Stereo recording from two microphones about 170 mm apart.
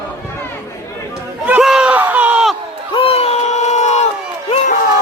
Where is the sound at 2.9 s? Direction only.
35° left (ahead or behind).